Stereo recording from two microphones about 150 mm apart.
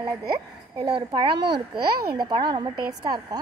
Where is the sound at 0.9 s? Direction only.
30° right (ahead or behind).